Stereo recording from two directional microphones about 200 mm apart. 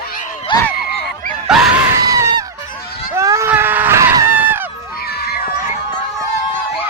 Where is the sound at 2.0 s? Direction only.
15° right (ahead or behind).